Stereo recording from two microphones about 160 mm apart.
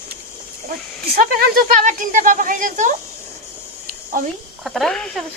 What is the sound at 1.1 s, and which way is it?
Speech, 65° right (ahead or behind).